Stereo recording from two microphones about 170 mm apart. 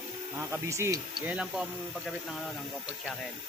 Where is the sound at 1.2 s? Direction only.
5° right (ahead or behind).